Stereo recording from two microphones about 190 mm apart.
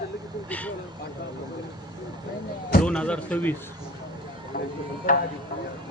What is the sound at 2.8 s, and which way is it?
Speech, 5° left (ahead or behind).